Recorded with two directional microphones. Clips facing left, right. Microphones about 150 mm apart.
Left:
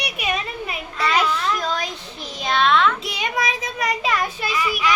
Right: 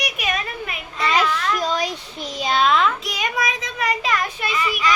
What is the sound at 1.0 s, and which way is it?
A child's voice, centre (ahead or behind).